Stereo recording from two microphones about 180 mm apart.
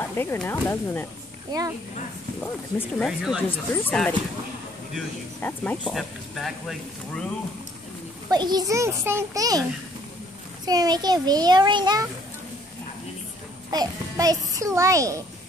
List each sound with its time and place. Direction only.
0.0 s speech: 15° left (ahead or behind)
1.5 s a child's voice: 20° right (ahead or behind)
2.8 s speech: centre (ahead or behind)
3.4 s speech: 10° left (ahead or behind)
5.4 s speech: 10° left (ahead or behind)
8.3 s a child's voice: 25° right (ahead or behind)
13.7 s a child's voice: 20° right (ahead or behind)